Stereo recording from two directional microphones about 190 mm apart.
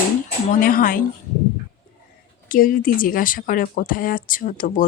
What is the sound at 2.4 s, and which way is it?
Speech, 50° left (ahead or behind).